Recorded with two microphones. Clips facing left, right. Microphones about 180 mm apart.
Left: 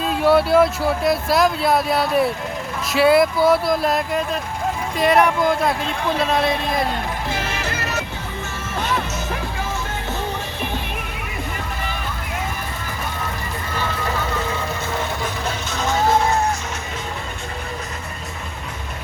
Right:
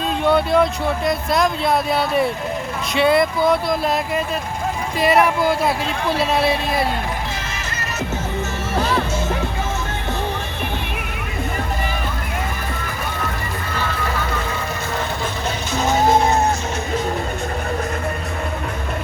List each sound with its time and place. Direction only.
0.0 s speech: 5° left (ahead or behind)
15.8 s music: 20° right (ahead or behind)